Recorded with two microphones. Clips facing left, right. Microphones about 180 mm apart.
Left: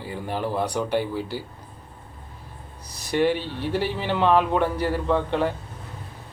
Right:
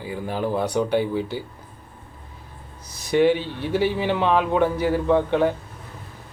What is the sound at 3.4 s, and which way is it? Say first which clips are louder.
Speech: right 3 dB; 55° right (ahead or behind).